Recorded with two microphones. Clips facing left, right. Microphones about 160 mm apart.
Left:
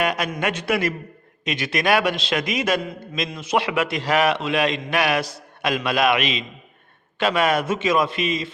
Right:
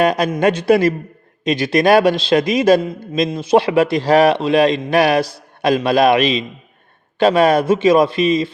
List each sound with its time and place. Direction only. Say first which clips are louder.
0.0 s a man's voice: right 8 dB; 35° right (ahead or behind)